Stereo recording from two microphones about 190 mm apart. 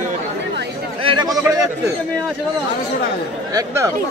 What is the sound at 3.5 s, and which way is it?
Speech, 15° right (ahead or behind).